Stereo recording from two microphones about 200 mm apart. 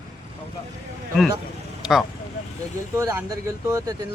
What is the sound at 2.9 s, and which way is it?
Speech, 15° right (ahead or behind).